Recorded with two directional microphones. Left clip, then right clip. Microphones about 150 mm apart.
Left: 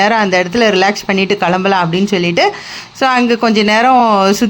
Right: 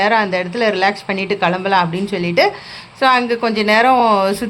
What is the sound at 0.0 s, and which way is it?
Speech, 30° left (ahead or behind).